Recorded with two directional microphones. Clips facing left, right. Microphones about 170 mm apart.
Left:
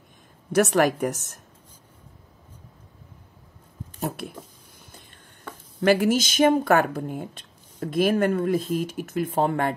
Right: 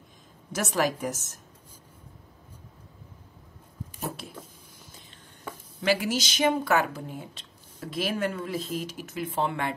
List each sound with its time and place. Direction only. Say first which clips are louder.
0.5 s a woman's voice: left 7 dB; 60° left (ahead or behind)
5.8 s speech: left 7 dB; 50° left (ahead or behind)